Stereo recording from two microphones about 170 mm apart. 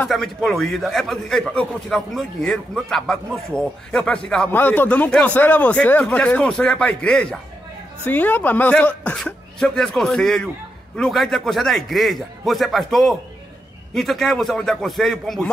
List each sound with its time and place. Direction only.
0.0 s a man's voice: 5° left (ahead or behind)